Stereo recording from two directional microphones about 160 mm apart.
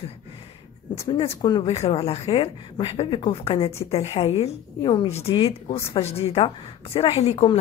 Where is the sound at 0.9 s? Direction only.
35° left (ahead or behind).